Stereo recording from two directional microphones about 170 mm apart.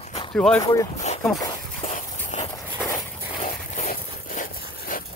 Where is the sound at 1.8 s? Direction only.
45° left (ahead or behind).